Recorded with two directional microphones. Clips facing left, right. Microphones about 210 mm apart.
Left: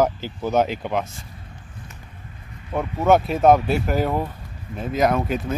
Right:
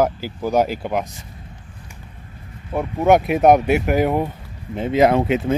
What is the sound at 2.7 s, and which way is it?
Speech, 15° right (ahead or behind).